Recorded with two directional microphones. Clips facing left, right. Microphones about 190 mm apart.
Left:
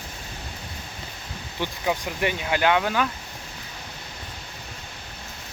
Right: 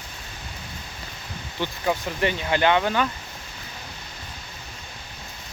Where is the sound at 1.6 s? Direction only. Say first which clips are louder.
Right 1 dB; 10° left (ahead or behind).